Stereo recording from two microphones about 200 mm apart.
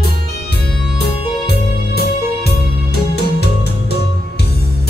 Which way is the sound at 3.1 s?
55° left (ahead or behind).